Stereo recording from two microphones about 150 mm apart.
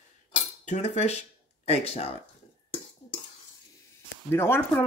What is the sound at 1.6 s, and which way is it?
Speech, 45° left (ahead or behind).